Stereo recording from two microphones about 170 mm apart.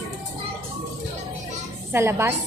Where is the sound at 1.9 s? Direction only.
15° right (ahead or behind).